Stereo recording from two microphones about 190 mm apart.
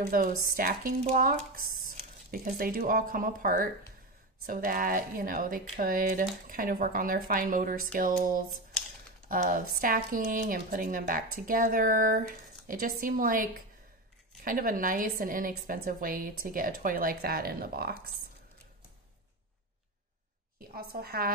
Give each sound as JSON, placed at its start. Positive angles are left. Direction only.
{"t": 0.0, "sound": "speech", "side_deg": -50}
{"t": 20.5, "sound": "speech", "side_deg": -50}